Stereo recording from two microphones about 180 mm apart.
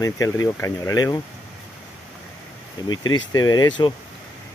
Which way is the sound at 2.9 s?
25° left (ahead or behind).